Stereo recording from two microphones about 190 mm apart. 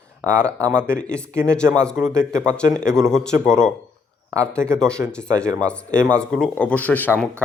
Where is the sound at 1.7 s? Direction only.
5° left (ahead or behind).